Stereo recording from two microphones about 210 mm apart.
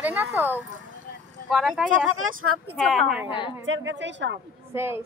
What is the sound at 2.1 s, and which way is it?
Speech, 75° right (ahead or behind).